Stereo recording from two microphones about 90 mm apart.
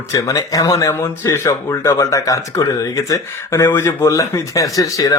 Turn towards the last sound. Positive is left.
turn(degrees=35)  # may be behind; listen again after turning